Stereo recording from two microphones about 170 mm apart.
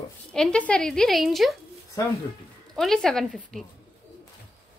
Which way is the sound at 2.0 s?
20° left (ahead or behind).